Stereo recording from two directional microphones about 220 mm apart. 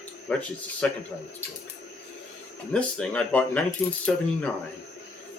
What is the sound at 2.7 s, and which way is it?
Speech, 5° left (ahead or behind).